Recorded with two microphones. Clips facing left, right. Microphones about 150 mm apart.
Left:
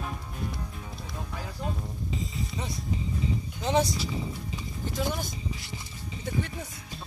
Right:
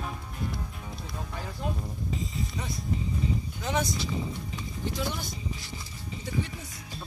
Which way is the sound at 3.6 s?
30° left (ahead or behind).